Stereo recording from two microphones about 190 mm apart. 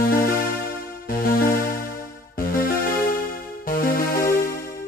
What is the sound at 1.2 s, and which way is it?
Music, 50° left (ahead or behind).